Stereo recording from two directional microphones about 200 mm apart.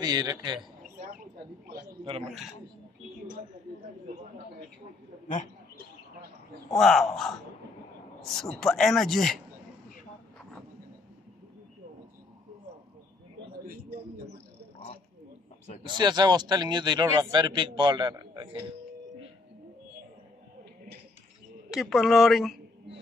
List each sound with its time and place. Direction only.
0.0 s a man's voice: 20° right (ahead or behind)
6.8 s speech: centre (ahead or behind)
16.0 s a man's voice: 20° right (ahead or behind)
21.6 s speech: centre (ahead or behind)